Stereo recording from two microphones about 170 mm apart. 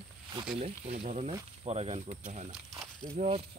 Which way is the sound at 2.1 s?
50° right (ahead or behind).